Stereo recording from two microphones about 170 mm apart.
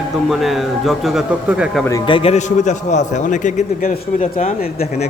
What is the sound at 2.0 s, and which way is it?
A man's voice, 35° left (ahead or behind).